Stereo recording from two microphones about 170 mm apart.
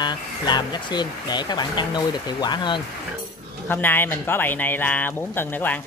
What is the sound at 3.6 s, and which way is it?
Speech, 10° left (ahead or behind).